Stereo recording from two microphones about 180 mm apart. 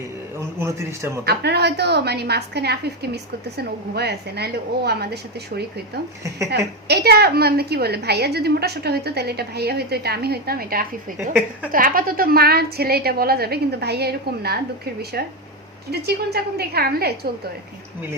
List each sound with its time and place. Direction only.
0.3 s a man's voice: 15° right (ahead or behind)
1.2 s a woman's voice: 65° right (ahead or behind)
15.9 s a woman's voice: 60° right (ahead or behind)